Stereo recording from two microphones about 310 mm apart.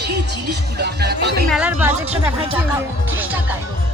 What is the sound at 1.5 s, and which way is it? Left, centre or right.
Speech, centre.